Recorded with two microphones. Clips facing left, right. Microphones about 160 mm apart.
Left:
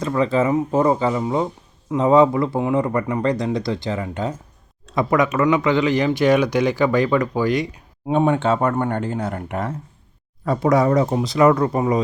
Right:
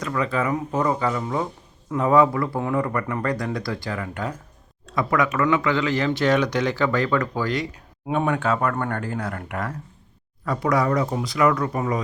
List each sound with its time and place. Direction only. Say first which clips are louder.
0.0 s speech: left 5 dB; 30° left (ahead or behind)
8.0 s speech: left 5 dB; 25° left (ahead or behind)